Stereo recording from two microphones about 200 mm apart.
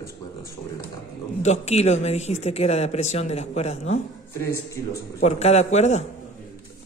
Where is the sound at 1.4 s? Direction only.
35° left (ahead or behind).